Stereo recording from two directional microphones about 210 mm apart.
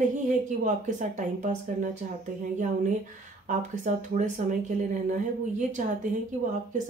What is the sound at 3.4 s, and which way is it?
Speech, 35° right (ahead or behind).